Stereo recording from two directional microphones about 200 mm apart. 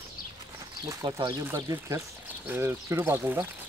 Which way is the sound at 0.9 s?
20° right (ahead or behind).